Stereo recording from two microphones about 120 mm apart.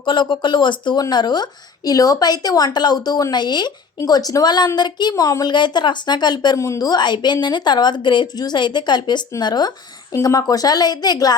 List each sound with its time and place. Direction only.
0.0 s a woman's voice: 40° left (ahead or behind)